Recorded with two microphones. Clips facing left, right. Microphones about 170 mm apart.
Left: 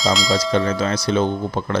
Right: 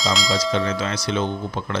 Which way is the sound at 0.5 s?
40° left (ahead or behind).